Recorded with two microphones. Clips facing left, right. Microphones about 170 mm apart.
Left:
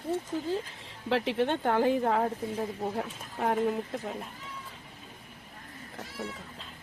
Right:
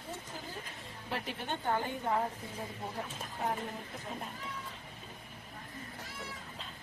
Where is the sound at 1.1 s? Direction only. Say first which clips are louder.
Left 11 dB; 90° left.